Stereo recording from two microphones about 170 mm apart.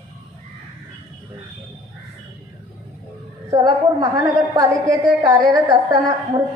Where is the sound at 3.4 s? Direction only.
20° right (ahead or behind).